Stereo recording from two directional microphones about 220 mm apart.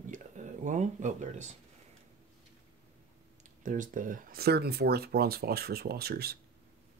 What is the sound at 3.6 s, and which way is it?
Speech, 35° right (ahead or behind).